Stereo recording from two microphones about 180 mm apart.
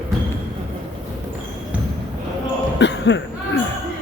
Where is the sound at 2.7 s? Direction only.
85° left.